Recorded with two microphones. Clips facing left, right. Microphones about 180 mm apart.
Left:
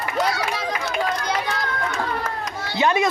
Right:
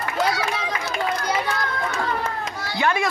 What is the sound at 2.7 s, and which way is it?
Speech, 20° left (ahead or behind).